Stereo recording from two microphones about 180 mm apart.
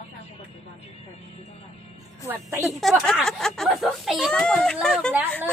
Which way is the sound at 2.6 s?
Centre (ahead or behind).